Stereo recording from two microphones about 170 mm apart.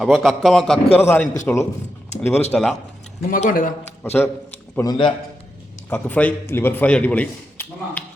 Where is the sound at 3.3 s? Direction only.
55° left (ahead or behind).